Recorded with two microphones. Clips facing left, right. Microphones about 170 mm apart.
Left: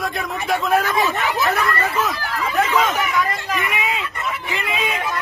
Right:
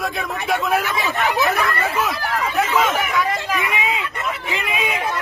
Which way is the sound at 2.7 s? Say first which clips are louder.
Right 1 dB; 10° right (ahead or behind).